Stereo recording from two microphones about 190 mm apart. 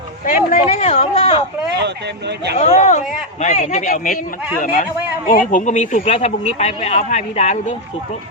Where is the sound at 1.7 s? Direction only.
60° right (ahead or behind).